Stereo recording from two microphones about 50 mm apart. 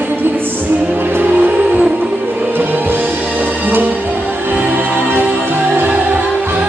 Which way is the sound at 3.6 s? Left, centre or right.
Right.